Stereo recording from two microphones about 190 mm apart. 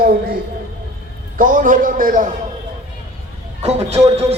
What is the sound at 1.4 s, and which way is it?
Speech, 45° right (ahead or behind).